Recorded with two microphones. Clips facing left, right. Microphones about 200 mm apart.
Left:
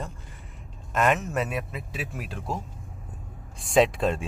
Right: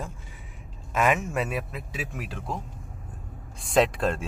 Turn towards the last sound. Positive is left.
turn(degrees=0)  # may be behind; listen again after turning